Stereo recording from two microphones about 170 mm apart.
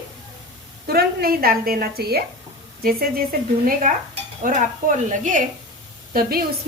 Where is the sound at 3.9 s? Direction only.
55° right (ahead or behind).